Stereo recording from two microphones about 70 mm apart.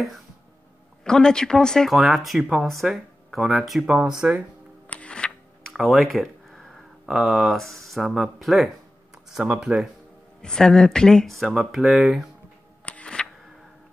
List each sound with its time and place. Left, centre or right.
1.0 s speech: centre
1.9 s speech: centre
4.8 s music: centre
5.7 s a sound: centre
7.1 s speech: centre
10.4 s speech: centre
12.8 s a sound: centre